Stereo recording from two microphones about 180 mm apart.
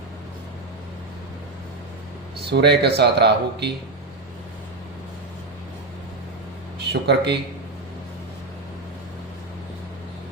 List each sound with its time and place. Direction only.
2.5 s speech: 70° right (ahead or behind)
6.7 s speech: 65° right (ahead or behind)